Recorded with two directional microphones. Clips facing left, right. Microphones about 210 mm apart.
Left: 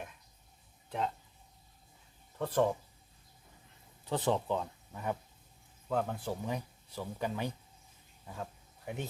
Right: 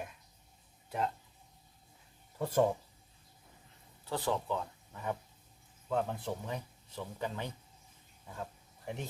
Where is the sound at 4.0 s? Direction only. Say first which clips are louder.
Left 3 dB; 20° left (ahead or behind).